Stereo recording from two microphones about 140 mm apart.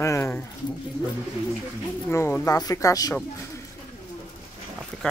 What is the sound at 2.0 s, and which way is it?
Speech, 15° left (ahead or behind).